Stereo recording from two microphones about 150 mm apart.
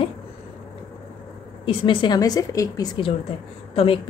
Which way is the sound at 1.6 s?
35° left (ahead or behind).